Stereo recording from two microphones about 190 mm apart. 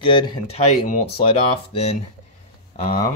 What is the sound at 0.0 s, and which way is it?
Speech, 25° left (ahead or behind).